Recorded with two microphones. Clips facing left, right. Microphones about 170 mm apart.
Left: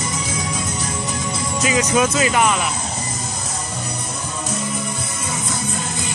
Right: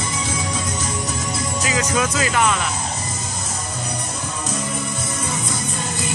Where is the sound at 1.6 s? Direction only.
20° left (ahead or behind).